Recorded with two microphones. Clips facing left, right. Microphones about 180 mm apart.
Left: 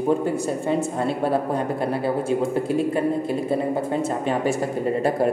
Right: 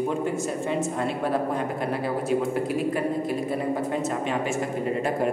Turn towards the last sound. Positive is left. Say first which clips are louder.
# left 4 dB
turn(degrees=35)  # may be behind; listen again after turning